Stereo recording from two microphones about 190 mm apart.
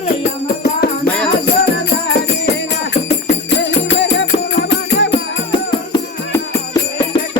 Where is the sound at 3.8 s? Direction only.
70° left (ahead or behind).